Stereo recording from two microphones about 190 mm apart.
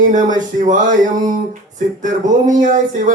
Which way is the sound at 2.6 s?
40° right (ahead or behind).